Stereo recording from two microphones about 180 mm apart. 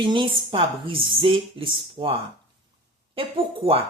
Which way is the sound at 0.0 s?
30° right (ahead or behind).